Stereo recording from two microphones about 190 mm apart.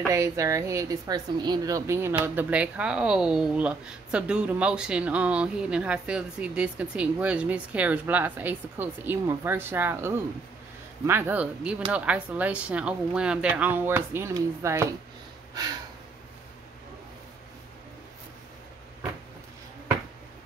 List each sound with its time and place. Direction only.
0.1 s speech: 15° right (ahead or behind)